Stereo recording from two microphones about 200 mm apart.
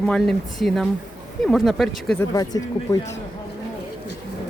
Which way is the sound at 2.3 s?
15° left (ahead or behind).